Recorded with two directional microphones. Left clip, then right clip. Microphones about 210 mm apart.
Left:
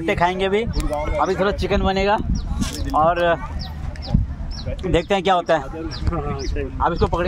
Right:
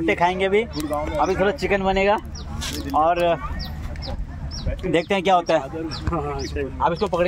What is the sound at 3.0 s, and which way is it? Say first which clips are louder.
Speech: left 2 dB; 20° left (ahead or behind).